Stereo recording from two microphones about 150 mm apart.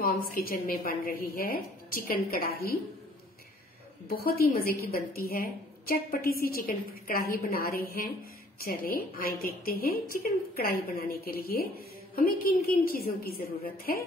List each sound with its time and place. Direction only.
0.0 s a woman's voice: 75° left (ahead or behind)
4.1 s a woman's voice: 85° left